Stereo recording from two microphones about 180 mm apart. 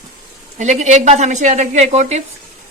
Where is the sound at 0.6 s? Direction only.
40° right (ahead or behind).